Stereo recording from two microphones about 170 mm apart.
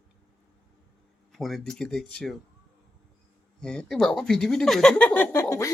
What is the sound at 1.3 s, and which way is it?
Speech, centre (ahead or behind).